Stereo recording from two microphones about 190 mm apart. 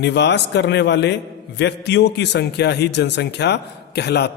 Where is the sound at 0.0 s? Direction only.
65° left (ahead or behind).